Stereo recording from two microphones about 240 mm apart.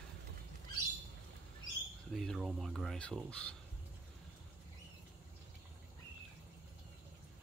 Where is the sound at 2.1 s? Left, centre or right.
Centre.